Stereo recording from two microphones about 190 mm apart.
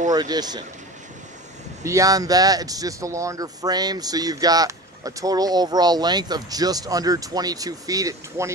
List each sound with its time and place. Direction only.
0.1 s speech: 20° right (ahead or behind)
1.8 s speech: 15° right (ahead or behind)